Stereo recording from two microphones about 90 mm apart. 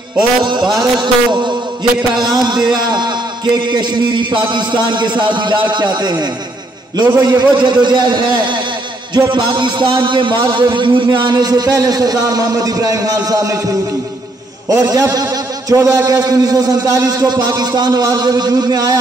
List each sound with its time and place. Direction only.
0.9 s a man's voice: 55° right (ahead or behind)